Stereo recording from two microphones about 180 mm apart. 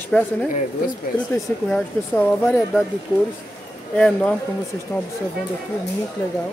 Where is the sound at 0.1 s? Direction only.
10° left (ahead or behind).